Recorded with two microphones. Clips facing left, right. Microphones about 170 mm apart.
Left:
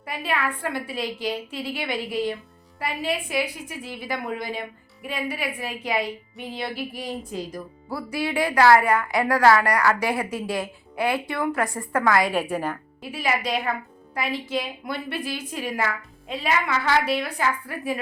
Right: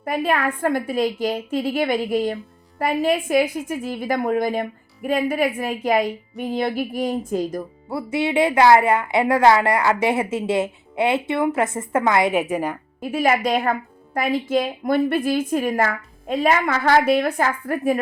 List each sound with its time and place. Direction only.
0.0 s a woman's voice: 45° right (ahead or behind)
7.9 s a woman's voice: 25° right (ahead or behind)
13.0 s a woman's voice: 45° right (ahead or behind)